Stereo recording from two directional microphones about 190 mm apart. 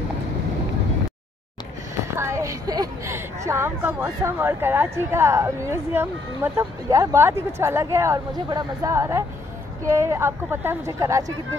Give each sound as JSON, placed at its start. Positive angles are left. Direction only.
{"t": 2.1, "sound": "speech", "side_deg": -15}